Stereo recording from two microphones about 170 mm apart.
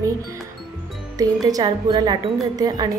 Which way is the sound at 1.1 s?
20° right (ahead or behind).